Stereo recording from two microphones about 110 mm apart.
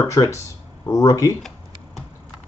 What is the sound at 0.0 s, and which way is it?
Speech, 25° left (ahead or behind).